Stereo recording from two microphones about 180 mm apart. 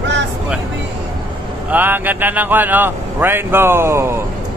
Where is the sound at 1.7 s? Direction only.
10° right (ahead or behind).